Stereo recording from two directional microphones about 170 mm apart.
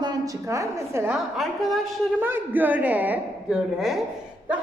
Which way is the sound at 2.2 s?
10° right (ahead or behind).